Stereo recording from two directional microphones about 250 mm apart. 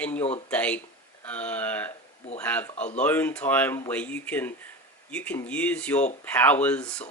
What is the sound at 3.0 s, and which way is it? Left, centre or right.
Speech, centre.